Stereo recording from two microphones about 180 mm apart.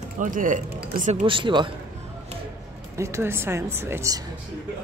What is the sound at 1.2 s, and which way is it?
Speech, 25° right (ahead or behind).